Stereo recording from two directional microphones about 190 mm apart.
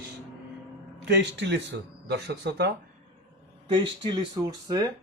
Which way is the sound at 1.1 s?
65° right (ahead or behind).